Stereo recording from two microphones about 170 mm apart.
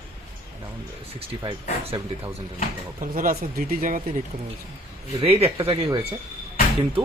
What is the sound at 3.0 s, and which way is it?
Speech, 55° right (ahead or behind).